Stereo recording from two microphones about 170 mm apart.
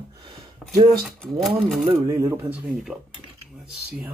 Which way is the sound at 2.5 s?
5° right (ahead or behind).